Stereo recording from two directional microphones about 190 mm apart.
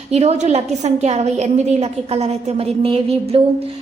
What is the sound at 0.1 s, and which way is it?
A woman's voice, 35° right (ahead or behind).